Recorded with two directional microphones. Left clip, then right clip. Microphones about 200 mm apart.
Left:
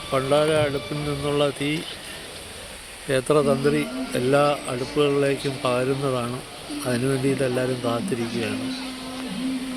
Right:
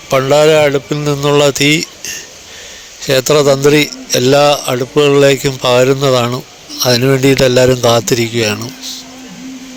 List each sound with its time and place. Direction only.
0.1 s a man's voice: 55° right (ahead or behind)
3.1 s a man's voice: 55° right (ahead or behind)